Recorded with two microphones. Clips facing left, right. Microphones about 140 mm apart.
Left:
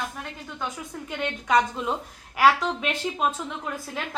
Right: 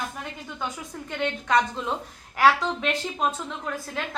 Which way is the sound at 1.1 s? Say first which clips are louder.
Even; 5° left (ahead or behind).